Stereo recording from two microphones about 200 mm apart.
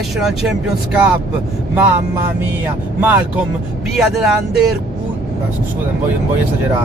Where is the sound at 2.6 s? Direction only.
10° right (ahead or behind).